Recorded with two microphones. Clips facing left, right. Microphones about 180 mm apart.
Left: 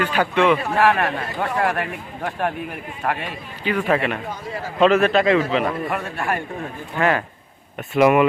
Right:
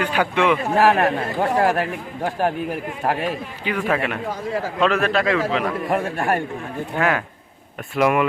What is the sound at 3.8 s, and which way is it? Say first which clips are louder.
Speech: left 1 dB; centre (ahead or behind).